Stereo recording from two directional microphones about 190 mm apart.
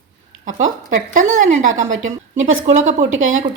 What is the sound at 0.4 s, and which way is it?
Speech, 40° right (ahead or behind).